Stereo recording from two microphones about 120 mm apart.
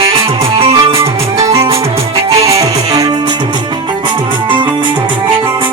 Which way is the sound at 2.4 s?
30° right (ahead or behind).